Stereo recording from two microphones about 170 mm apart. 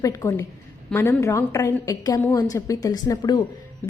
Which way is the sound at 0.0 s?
20° left (ahead or behind).